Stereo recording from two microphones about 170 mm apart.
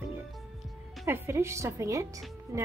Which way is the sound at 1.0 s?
15° right (ahead or behind).